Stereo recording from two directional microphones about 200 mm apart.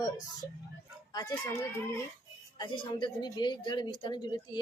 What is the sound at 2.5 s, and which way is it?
A woman's voice, 25° left (ahead or behind).